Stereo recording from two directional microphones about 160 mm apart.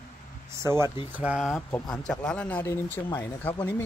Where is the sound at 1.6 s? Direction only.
10° left (ahead or behind).